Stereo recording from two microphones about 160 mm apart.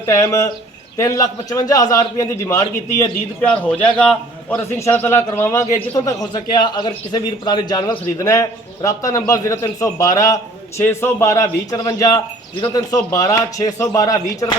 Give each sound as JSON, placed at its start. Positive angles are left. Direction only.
{"t": 0.0, "sound": "a man's voice", "side_deg": 20}
{"t": 3.4, "sound": "a man's voice", "side_deg": 5}